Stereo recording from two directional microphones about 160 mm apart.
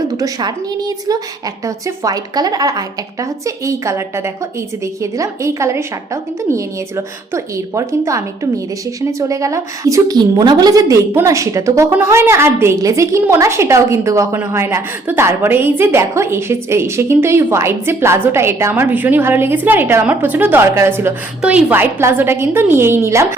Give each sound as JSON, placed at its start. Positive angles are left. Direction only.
{"t": 0.2, "sound": "a woman's voice", "side_deg": -25}
{"t": 5.1, "sound": "a woman's voice", "side_deg": -20}